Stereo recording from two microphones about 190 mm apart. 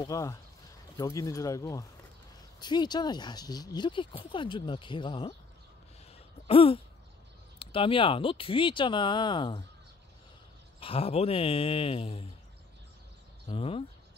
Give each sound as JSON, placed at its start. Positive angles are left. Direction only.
{"t": 0.0, "sound": "speech", "side_deg": 15}
{"t": 6.4, "sound": "a sound", "side_deg": 30}
{"t": 7.5, "sound": "speech", "side_deg": 30}
{"t": 10.8, "sound": "speech", "side_deg": 30}
{"t": 13.5, "sound": "speech", "side_deg": 30}